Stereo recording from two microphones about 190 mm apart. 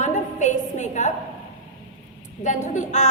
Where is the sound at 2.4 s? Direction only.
40° left (ahead or behind).